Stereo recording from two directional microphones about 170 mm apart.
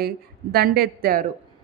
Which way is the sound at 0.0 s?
65° right (ahead or behind).